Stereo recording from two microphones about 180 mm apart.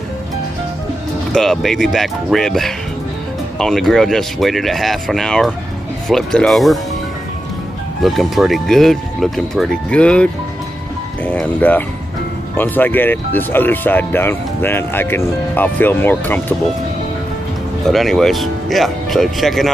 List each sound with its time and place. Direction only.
1.3 s speech: 5° left (ahead or behind)
8.0 s speech: centre (ahead or behind)
17.8 s speech: centre (ahead or behind)